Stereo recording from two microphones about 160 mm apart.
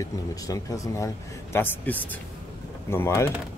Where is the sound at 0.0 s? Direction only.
20° left (ahead or behind).